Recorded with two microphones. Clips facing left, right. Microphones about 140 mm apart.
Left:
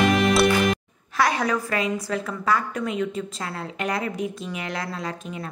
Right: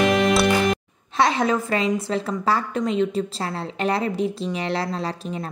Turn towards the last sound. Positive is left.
turn(degrees=-30)  # may be behind; listen again after turning